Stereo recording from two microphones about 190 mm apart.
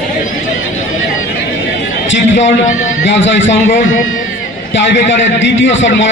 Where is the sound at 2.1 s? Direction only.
70° left (ahead or behind).